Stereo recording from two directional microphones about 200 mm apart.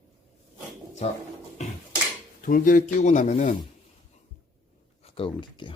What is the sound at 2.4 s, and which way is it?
Speech, 45° left (ahead or behind).